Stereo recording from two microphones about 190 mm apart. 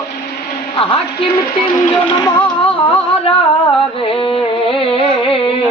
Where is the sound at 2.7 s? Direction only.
30° left (ahead or behind).